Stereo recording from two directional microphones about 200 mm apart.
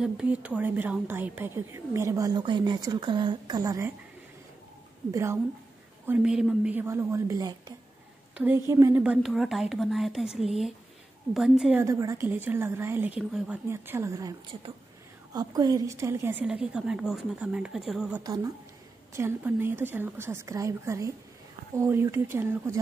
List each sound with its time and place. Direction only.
0.0 s a woman's voice: 5° right (ahead or behind)
5.1 s a woman's voice: 15° right (ahead or behind)
11.8 s a woman's voice: 15° right (ahead or behind)
18.2 s a woman's voice: 15° right (ahead or behind)